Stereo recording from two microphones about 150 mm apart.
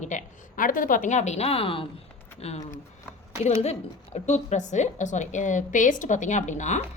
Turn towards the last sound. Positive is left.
turn(degrees=50)  # may be behind; listen again after turning